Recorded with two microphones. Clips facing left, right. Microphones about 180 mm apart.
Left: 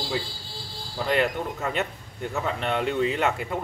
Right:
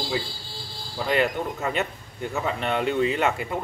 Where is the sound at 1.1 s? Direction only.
5° right (ahead or behind).